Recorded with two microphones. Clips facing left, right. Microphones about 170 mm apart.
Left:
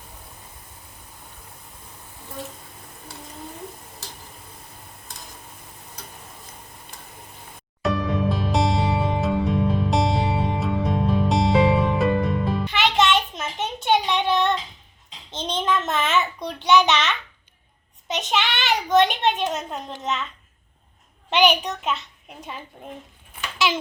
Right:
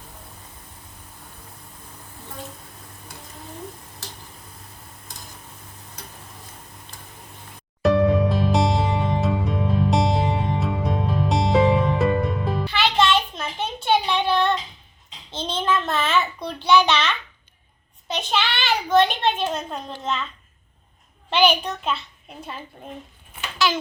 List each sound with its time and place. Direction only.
7.9 s music: centre (ahead or behind)
12.6 s music: 20° left (ahead or behind)
14.2 s child singing: 20° left (ahead or behind)
15.3 s a sound: 15° left (ahead or behind)
21.2 s a sound: 15° left (ahead or behind)
23.6 s a child's voice: 25° left (ahead or behind)